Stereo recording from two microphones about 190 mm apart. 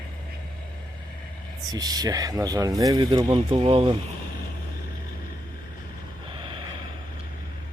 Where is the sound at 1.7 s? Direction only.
20° right (ahead or behind).